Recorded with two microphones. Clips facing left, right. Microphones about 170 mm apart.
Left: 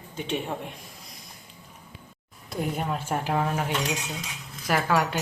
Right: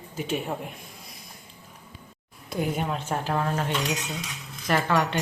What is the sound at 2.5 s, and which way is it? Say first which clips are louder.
Speech: right 1 dB; centre (ahead or behind).